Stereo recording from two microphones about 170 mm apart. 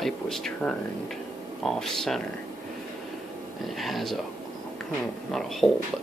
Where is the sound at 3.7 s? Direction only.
Centre (ahead or behind).